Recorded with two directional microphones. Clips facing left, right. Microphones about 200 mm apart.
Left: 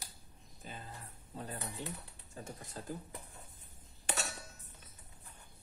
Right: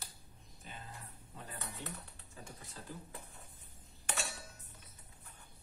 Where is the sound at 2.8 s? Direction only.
45° left (ahead or behind).